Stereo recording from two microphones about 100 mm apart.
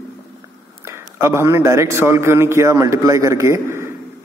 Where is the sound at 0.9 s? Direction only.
25° right (ahead or behind).